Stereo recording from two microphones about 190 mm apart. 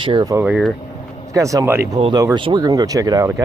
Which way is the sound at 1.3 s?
15° right (ahead or behind).